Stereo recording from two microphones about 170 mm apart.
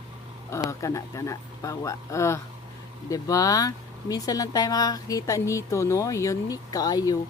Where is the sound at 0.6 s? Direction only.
20° left (ahead or behind).